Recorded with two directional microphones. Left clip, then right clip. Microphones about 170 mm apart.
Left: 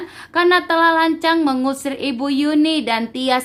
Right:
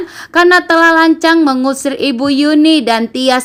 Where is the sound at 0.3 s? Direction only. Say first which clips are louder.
Right 7 dB; 30° right (ahead or behind).